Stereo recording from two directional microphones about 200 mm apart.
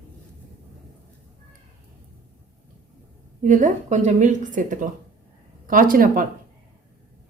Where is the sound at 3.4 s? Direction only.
40° right (ahead or behind).